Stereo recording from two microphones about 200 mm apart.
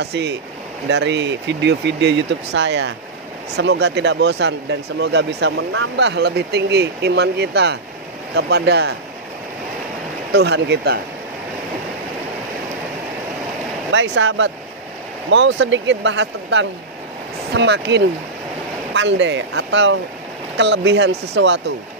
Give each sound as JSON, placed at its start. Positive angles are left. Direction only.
{"t": 0.0, "sound": "speech", "side_deg": -60}
{"t": 10.3, "sound": "speech", "side_deg": -55}
{"t": 13.9, "sound": "speech", "side_deg": -65}